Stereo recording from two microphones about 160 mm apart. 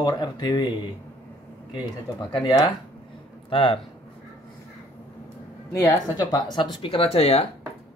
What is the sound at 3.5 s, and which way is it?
Speech, 35° left (ahead or behind).